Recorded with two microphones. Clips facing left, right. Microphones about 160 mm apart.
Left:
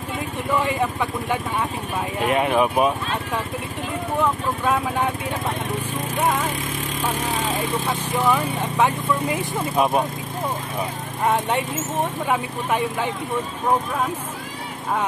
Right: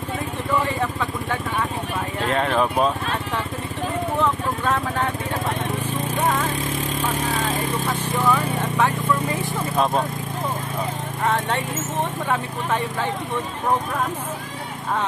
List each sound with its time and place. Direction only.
0.7 s speech: 15° left (ahead or behind)
4.2 s speech: 10° left (ahead or behind)
6.1 s speech: 10° left (ahead or behind)
8.3 s speech: 15° left (ahead or behind)
11.2 s speech: 15° left (ahead or behind)